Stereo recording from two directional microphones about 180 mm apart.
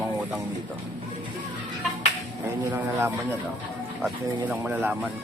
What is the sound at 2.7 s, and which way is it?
Speech, 15° right (ahead or behind).